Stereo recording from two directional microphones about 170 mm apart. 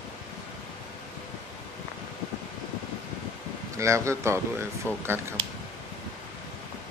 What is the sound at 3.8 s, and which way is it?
Speech, 15° right (ahead or behind).